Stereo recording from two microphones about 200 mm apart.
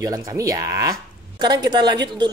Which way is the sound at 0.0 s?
15° right (ahead or behind).